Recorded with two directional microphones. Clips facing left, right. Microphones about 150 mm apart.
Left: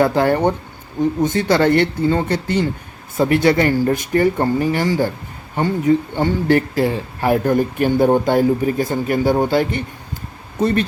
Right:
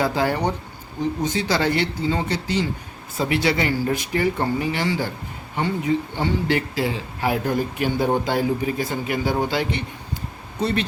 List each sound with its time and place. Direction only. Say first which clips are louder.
0.0 s speech: left 6 dB; 55° left (ahead or behind)